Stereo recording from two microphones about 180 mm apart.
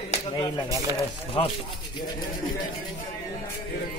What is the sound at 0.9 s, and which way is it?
Speech, 30° left (ahead or behind).